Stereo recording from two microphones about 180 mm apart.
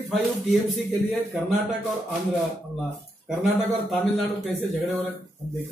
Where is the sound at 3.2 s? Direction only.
Centre (ahead or behind).